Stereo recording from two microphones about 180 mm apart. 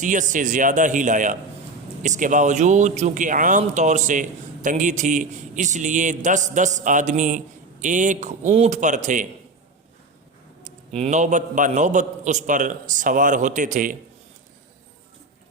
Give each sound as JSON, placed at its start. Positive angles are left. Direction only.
{"t": 0.0, "sound": "speech", "side_deg": -45}
{"t": 10.6, "sound": "speech", "side_deg": -40}